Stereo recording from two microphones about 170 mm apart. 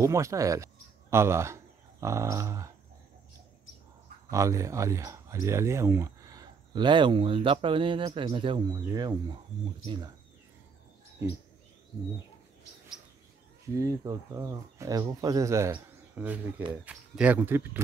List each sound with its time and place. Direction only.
0.0 s speech: 20° right (ahead or behind)
4.3 s speech: 20° right (ahead or behind)
13.7 s speech: 20° right (ahead or behind)